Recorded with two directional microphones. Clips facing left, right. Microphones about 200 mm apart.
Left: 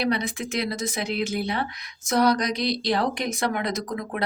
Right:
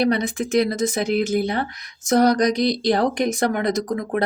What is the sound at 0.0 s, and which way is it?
A woman's voice, 45° right (ahead or behind).